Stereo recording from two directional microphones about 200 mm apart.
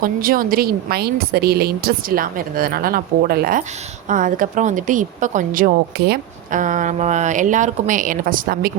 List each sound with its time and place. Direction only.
0.0 s speech: 45° right (ahead or behind)